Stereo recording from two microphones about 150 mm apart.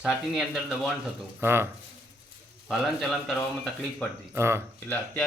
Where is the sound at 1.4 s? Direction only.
15° right (ahead or behind).